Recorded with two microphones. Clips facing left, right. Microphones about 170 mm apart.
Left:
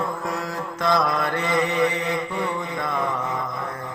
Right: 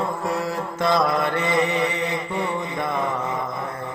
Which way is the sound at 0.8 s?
20° right (ahead or behind).